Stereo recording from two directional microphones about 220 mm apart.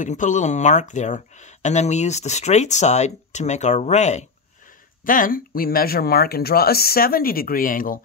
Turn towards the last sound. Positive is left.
turn(degrees=40)  # may be behind; listen again after turning